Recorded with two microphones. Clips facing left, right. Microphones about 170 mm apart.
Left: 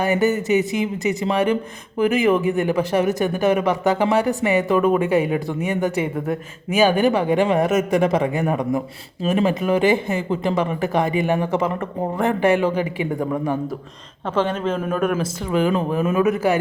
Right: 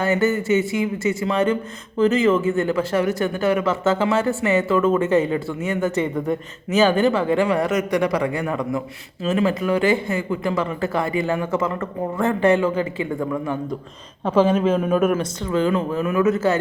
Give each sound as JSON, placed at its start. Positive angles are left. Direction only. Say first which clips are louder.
{"t": 0.0, "sound": "speech", "louder": "left 1 dB", "side_deg": 15}
{"t": 14.3, "sound": "a man's voice", "louder": "right 4 dB", "side_deg": -10}
{"t": 15.1, "sound": "speech", "louder": "even", "side_deg": 10}